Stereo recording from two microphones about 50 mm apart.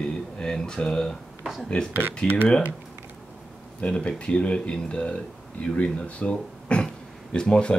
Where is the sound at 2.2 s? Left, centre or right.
Left.